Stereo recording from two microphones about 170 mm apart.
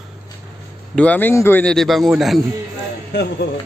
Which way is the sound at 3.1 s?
85° left.